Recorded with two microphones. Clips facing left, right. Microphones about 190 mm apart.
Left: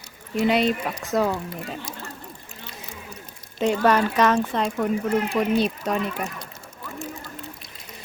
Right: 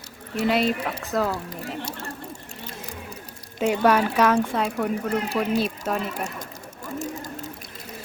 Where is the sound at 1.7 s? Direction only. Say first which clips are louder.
Right 3 dB; 70° right (ahead or behind).